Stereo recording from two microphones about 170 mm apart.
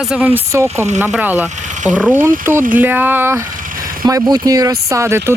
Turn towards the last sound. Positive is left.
turn(degrees=-15)  # may be behind; listen again after turning